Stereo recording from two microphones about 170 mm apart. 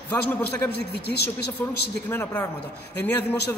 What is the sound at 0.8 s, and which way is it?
Speech, 75° left (ahead or behind).